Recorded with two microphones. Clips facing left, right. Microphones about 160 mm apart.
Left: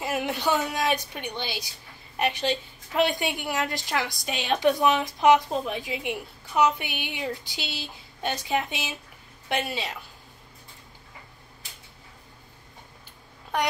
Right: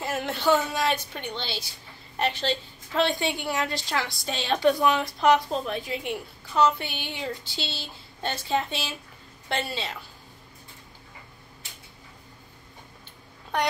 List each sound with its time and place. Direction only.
0.0 s a woman's voice: 10° left (ahead or behind)